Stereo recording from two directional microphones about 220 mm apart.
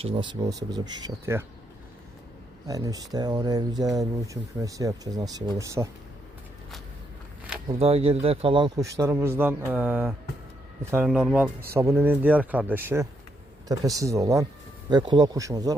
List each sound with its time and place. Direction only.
0.0 s speech: 20° right (ahead or behind)
2.6 s speech: 15° right (ahead or behind)
7.8 s speech: 25° right (ahead or behind); by 11.5 s centre (ahead or behind)
11.7 s speech: 10° right (ahead or behind)